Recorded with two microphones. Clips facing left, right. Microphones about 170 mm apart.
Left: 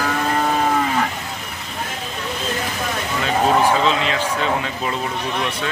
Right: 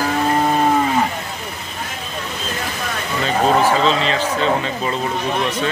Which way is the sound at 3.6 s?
10° left (ahead or behind).